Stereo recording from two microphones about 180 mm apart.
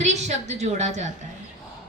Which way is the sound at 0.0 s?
40° right (ahead or behind).